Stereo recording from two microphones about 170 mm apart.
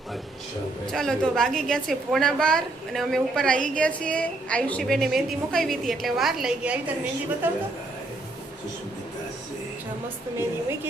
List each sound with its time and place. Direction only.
0.9 s a woman's voice: 5° left (ahead or behind)